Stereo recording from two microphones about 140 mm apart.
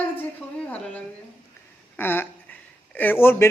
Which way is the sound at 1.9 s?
15° left (ahead or behind).